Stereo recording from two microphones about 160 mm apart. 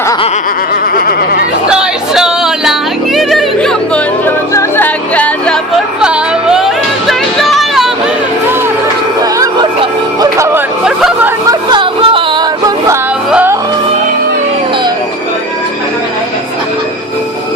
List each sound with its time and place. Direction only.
0.9 s goat: 65° left (ahead or behind)
1.7 s music: 5° right (ahead or behind)
6.0 s music: 5° right (ahead or behind)
7.1 s a sound: centre (ahead or behind)
10.2 s music: 20° right (ahead or behind)
10.8 s hubbub: 5° right (ahead or behind)
11.4 s music: 30° right (ahead or behind)
13.3 s music: 10° right (ahead or behind)